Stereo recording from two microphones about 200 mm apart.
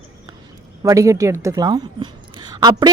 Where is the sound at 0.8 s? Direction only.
15° right (ahead or behind).